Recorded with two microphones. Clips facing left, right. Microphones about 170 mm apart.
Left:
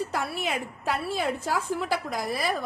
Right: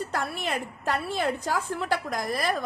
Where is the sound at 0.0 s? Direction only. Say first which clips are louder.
Left 1 dB; 5° left (ahead or behind).